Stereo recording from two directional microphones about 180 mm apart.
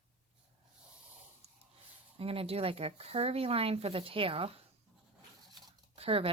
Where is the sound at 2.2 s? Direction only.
30° right (ahead or behind).